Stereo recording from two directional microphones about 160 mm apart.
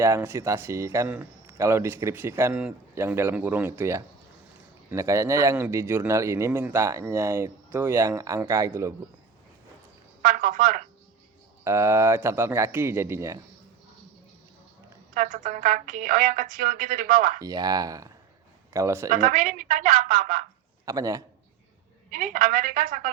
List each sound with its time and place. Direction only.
0.0 s speech: 15° right (ahead or behind)
10.3 s a woman's voice: 55° right (ahead or behind)
11.6 s speech: 20° right (ahead or behind)
15.1 s speech: 50° right (ahead or behind)
17.4 s speech: 25° right (ahead or behind)
19.1 s a woman's voice: 55° right (ahead or behind)
20.8 s speech: 20° right (ahead or behind)
22.1 s a woman's voice: 55° right (ahead or behind)